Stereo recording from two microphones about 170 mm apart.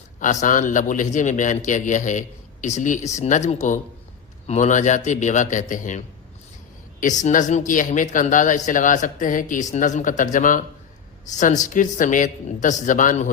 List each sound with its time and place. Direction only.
0.2 s a man's voice: 50° left (ahead or behind)
7.2 s a man's voice: 45° left (ahead or behind)